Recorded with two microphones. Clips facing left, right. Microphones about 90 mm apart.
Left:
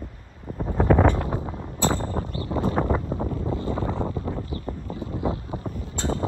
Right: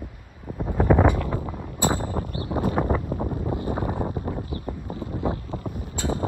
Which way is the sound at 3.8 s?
55° right (ahead or behind).